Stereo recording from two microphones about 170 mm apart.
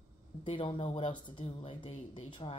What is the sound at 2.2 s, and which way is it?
Speech, 30° left (ahead or behind).